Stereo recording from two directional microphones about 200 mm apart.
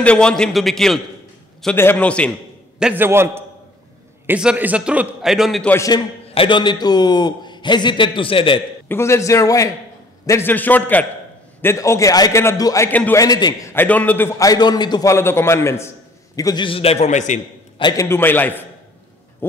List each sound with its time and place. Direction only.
0.0 s a man's voice: 5° left (ahead or behind)
2.8 s a man's voice: 10° right (ahead or behind)
5.8 s a man's voice: 20° left (ahead or behind)
8.8 s a man's voice: 10° left (ahead or behind); by 17.4 s 35° left (ahead or behind)
17.7 s a man's voice: 20° left (ahead or behind)